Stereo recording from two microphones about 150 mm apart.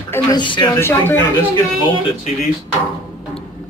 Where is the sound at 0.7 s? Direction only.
15° left (ahead or behind).